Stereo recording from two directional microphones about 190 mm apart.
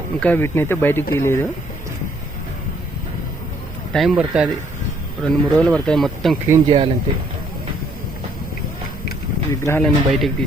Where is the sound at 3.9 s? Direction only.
Centre (ahead or behind).